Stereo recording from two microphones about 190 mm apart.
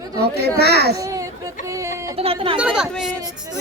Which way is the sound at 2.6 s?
5° right (ahead or behind).